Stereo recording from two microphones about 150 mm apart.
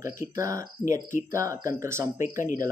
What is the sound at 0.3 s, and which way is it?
Speech, 20° right (ahead or behind).